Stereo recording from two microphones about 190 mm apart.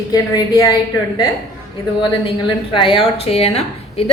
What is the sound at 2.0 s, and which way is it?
A woman's voice, 25° left (ahead or behind).